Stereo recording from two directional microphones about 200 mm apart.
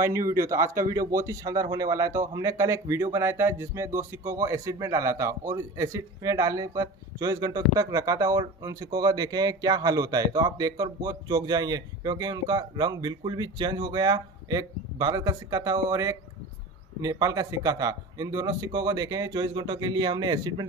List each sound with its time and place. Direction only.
0.4 s a man's voice: 15° right (ahead or behind)